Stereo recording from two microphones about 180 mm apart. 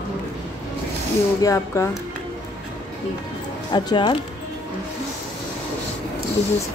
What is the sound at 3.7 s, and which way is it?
Speech, 25° left (ahead or behind).